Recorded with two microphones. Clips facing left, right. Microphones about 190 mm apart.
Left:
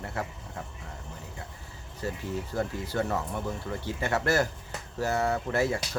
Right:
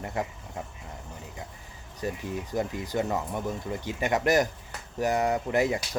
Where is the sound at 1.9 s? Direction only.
15° right (ahead or behind).